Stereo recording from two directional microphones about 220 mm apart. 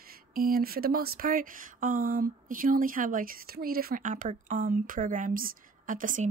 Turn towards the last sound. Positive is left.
turn(degrees=-35)  # may be behind; listen again after turning